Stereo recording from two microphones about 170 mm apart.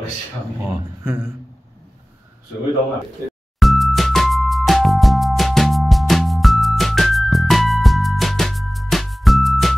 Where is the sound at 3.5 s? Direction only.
Centre (ahead or behind).